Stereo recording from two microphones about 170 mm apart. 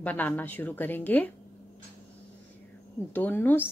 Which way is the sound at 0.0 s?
10° left (ahead or behind).